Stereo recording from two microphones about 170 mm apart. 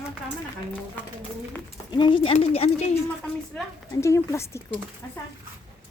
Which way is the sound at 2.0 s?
30° left (ahead or behind).